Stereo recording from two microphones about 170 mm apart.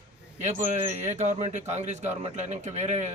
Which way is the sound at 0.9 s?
40° right (ahead or behind).